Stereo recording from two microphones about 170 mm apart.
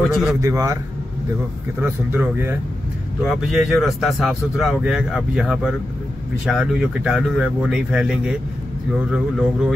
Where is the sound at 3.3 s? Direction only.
Centre (ahead or behind).